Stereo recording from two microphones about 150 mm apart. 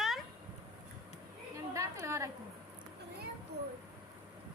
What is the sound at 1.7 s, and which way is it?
Speech, 20° right (ahead or behind).